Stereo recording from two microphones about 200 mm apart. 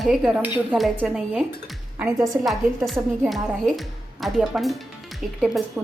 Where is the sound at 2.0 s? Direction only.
15° right (ahead or behind).